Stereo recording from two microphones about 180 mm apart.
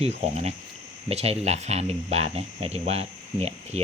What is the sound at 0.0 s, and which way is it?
Speech, 35° right (ahead or behind).